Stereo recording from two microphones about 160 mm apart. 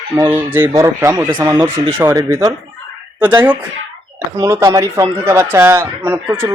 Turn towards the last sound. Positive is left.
turn(degrees=-15)  # may be behind; listen again after turning